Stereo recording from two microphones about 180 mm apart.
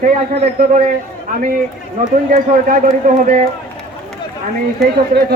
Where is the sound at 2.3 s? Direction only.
45° right (ahead or behind).